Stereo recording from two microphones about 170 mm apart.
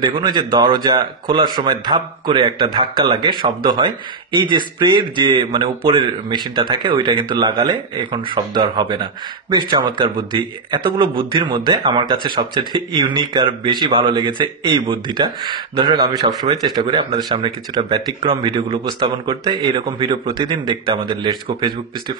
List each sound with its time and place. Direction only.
0.0 s a man's voice: 25° right (ahead or behind)